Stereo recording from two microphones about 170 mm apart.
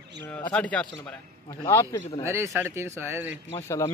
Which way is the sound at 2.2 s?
15° right (ahead or behind).